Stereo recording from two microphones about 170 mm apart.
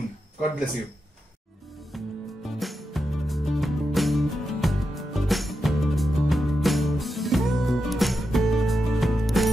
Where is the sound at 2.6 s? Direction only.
Centre (ahead or behind).